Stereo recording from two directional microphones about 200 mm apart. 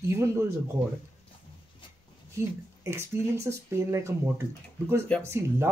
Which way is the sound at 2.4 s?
15° right (ahead or behind).